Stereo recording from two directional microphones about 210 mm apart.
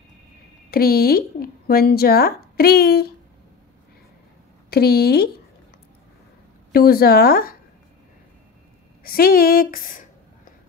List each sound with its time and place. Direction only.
0.7 s speech: 45° left (ahead or behind)
4.6 s speech: 50° left (ahead or behind)
6.7 s speech: 45° left (ahead or behind)
9.0 s speech: 45° left (ahead or behind)